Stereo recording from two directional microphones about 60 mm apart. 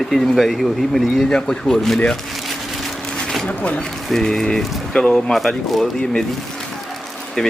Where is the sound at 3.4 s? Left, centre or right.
Left.